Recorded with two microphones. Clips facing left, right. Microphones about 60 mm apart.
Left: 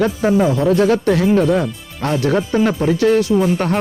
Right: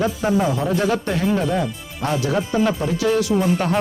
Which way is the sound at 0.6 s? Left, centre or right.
Left.